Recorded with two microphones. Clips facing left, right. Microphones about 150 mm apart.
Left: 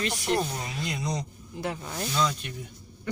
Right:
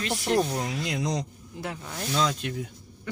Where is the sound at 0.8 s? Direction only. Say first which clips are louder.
Even; 90° right.